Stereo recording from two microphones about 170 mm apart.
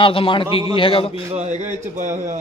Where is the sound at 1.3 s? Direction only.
45° right (ahead or behind).